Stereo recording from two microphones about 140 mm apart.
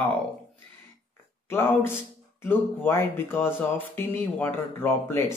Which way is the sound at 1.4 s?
15° left (ahead or behind).